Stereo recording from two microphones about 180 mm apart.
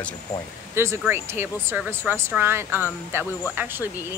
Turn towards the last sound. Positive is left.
turn(degrees=-10)  # may be behind; listen again after turning